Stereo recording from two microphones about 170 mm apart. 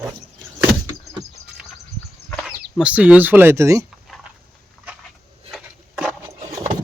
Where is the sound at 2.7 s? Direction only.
5° right (ahead or behind).